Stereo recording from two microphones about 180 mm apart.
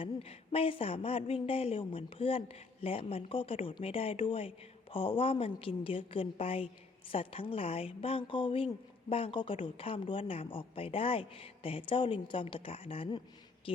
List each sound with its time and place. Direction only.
0.0 s a woman's voice: 30° left (ahead or behind)